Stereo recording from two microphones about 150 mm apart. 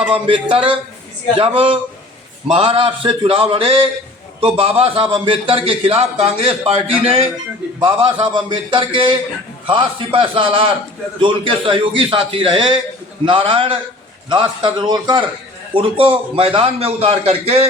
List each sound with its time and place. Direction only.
0.5 s a man's voice: 35° right (ahead or behind)